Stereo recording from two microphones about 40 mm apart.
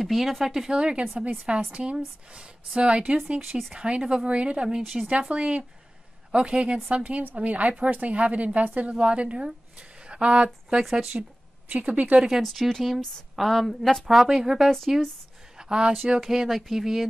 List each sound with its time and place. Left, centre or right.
0.0 s speech: centre
0.7 s speech: right
1.0 s a woman's voice: right
1.4 s speech: right
4.9 s speech: centre
5.3 s speech: right
9.5 s a sound: right
10.8 s speech: centre
11.7 s speech: right
12.4 s speech: centre
15.5 s a sound: centre
16.2 s speech: centre